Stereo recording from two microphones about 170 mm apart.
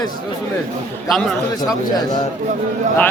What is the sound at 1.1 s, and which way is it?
Speech, centre (ahead or behind).